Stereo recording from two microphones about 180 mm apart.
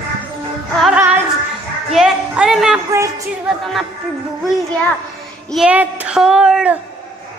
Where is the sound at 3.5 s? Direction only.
Centre (ahead or behind).